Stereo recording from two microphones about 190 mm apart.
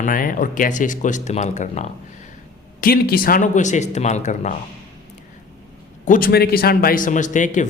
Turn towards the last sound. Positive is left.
turn(degrees=40)  # may be behind; listen again after turning